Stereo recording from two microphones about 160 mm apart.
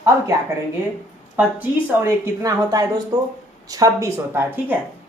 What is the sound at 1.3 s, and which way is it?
A woman's voice, 10° right (ahead or behind).